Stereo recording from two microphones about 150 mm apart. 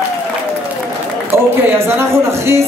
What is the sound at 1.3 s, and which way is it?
Music, 15° right (ahead or behind).